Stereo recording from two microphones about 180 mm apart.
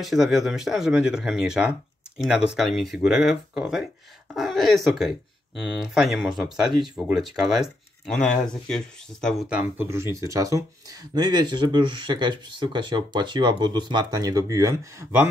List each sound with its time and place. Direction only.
0.0 s speech: centre (ahead or behind)
9.8 s speech: 15° right (ahead or behind)